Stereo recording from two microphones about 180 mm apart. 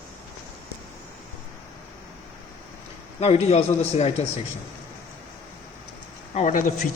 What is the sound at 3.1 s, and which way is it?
Speech, 35° left (ahead or behind).